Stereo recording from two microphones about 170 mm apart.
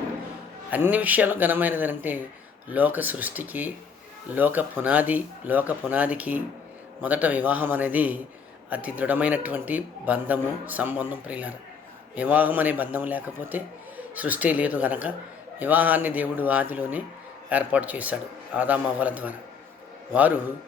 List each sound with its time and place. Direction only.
0.7 s a man's voice: 10° right (ahead or behind)